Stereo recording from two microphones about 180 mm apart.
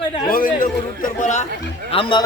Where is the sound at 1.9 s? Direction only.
30° left (ahead or behind).